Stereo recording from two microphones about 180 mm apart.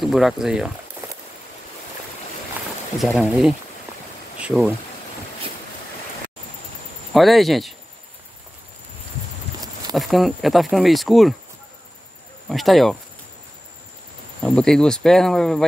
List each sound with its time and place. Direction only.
0.0 s speech: centre (ahead or behind)
3.0 s speech: centre (ahead or behind)
7.2 s speech: centre (ahead or behind)
9.9 s speech: centre (ahead or behind)
12.4 s speech: centre (ahead or behind)
14.4 s speech: 5° left (ahead or behind)